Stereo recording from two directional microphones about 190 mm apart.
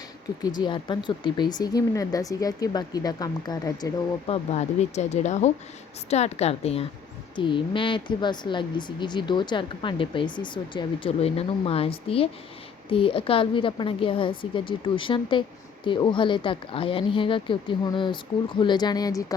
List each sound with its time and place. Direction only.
0.6 s a woman's voice: 25° left (ahead or behind)
4.3 s a woman's voice: 35° left (ahead or behind); by 19.2 s 20° left (ahead or behind)